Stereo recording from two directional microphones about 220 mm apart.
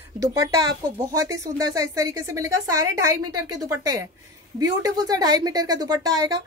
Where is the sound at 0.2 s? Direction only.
15° right (ahead or behind).